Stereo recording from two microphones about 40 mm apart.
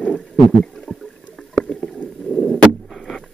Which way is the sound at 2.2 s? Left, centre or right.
Centre.